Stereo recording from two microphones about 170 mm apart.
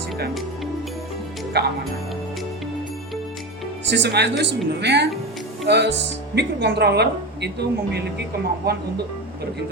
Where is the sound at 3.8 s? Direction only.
90° right.